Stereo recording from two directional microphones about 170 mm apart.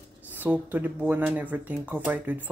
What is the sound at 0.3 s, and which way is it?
Speech, 10° right (ahead or behind).